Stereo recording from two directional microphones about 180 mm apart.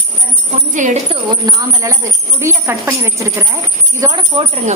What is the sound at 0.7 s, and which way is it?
Speech, 40° right (ahead or behind).